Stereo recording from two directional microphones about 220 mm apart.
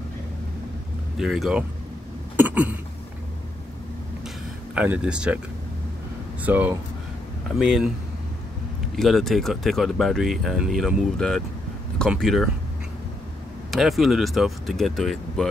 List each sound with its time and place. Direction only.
1.1 s speech: centre (ahead or behind)
2.3 s a sound: 5° right (ahead or behind)
4.7 s speech: 5° right (ahead or behind)
6.4 s speech: 10° right (ahead or behind)
8.9 s speech: centre (ahead or behind)
13.7 s speech: centre (ahead or behind)